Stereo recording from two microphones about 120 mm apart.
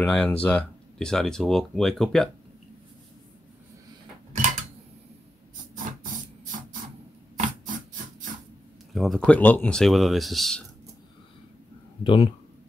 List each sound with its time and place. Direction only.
0.0 s speech: 10° left (ahead or behind)
7.3 s a sound: 90° right
8.9 s speech: centre (ahead or behind)
12.0 s speech: 45° left (ahead or behind)